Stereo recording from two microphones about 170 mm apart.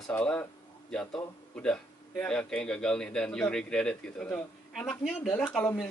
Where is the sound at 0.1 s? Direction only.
10° left (ahead or behind).